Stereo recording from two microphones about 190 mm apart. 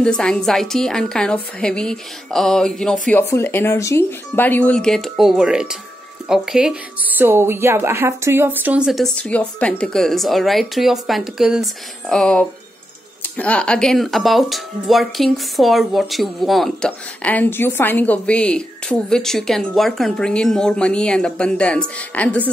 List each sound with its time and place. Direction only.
0.0 s speech: 5° left (ahead or behind)